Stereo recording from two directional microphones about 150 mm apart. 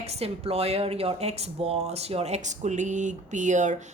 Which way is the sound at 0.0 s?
45° right (ahead or behind).